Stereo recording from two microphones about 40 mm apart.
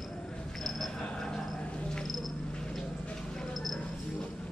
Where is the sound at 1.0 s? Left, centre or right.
Centre.